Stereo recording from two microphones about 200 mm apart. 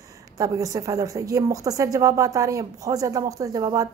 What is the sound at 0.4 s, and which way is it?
A woman's voice, 15° right (ahead or behind).